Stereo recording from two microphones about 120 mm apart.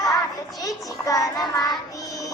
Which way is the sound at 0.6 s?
30° left (ahead or behind).